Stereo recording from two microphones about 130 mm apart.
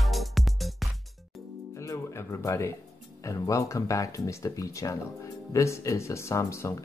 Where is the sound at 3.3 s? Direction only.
25° left (ahead or behind).